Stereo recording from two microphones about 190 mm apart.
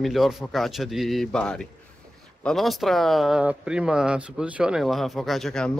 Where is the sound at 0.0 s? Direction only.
Centre (ahead or behind).